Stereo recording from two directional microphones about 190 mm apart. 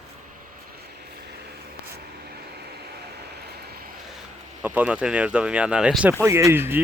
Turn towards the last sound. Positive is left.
turn(degrees=-10)  # may be behind; listen again after turning